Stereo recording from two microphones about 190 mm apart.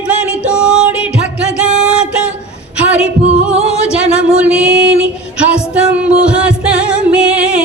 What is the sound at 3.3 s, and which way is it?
Music, 35° right (ahead or behind).